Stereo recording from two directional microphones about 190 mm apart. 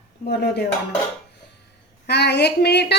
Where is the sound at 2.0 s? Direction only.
60° left (ahead or behind).